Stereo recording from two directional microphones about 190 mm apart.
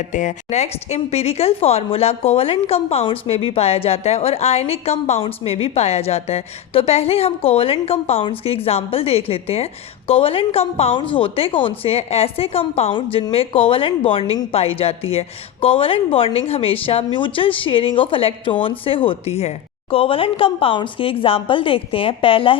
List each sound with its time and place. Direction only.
0.1 s a woman's voice: 40° left (ahead or behind)